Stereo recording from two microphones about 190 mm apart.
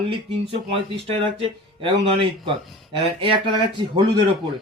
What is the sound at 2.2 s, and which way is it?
Speech, 25° right (ahead or behind).